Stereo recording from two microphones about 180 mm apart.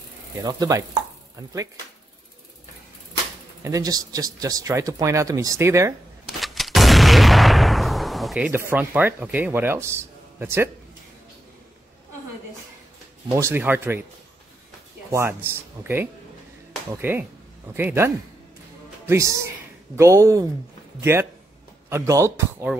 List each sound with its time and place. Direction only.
0.4 s speech: 20° right (ahead or behind)
3.6 s speech: 20° right (ahead or behind)
6.4 s artillery fire: centre (ahead or behind)
8.5 s speech: 10° right (ahead or behind)
13.4 s speech: 10° right (ahead or behind)
15.0 s speech: 15° right (ahead or behind)